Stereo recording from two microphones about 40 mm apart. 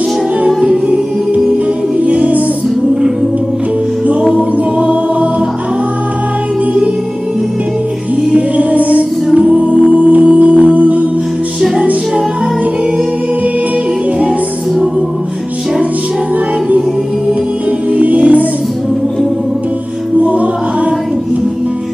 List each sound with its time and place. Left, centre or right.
0.6 s music: right
4.4 s music: right
8.4 s music: right
9.3 s music: right
9.6 s music: right
17.9 s music: right